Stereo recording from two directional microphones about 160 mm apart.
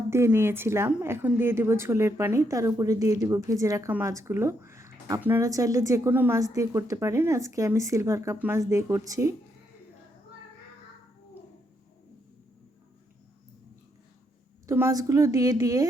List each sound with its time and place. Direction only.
0.1 s a woman's voice: 15° right (ahead or behind)
14.7 s a woman's voice: 20° right (ahead or behind)